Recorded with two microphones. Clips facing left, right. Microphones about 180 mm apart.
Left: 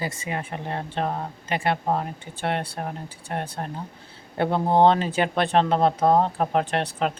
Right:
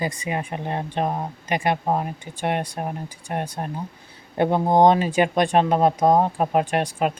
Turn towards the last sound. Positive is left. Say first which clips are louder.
# right 3 dB
turn(degrees=-10)  # may be behind; listen again after turning